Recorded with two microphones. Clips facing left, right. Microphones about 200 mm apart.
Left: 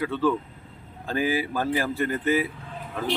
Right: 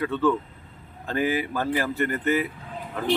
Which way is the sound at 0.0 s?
10° left (ahead or behind).